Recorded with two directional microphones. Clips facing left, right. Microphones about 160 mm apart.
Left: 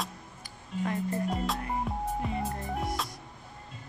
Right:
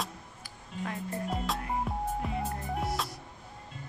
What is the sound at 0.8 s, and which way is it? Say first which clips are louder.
Music: left 5 dB; centre (ahead or behind).